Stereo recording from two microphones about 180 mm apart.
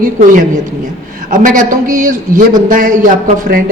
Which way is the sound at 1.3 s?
45° right (ahead or behind).